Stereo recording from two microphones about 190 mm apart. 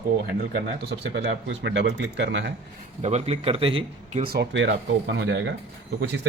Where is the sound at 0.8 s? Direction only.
65° right (ahead or behind).